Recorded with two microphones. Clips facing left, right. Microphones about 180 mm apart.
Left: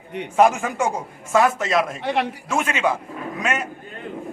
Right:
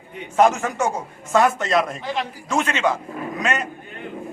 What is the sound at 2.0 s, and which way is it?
Speech, 65° left (ahead or behind).